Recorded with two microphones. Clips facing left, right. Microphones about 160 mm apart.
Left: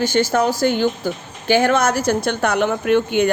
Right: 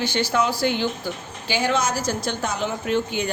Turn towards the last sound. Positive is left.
turn(degrees=60)  # may be behind; listen again after turning